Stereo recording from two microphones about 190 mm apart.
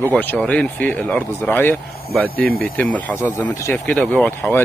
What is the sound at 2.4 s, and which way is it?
Speech, 50° right (ahead or behind).